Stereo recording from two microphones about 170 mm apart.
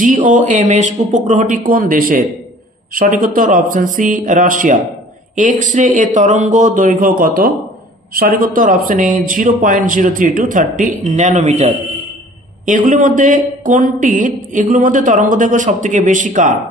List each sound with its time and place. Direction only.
0.0 s speech: 50° right (ahead or behind)